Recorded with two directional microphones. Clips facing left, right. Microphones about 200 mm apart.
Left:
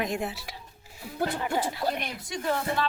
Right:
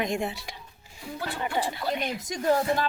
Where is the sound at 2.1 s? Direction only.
40° right (ahead or behind).